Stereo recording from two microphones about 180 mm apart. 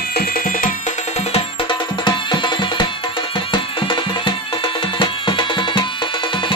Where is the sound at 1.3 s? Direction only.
30° left (ahead or behind).